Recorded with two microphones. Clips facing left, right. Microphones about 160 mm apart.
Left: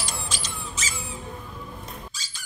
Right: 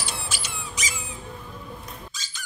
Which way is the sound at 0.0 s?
10° right (ahead or behind).